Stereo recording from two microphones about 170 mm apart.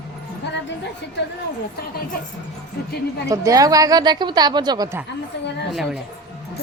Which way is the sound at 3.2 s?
20° right (ahead or behind).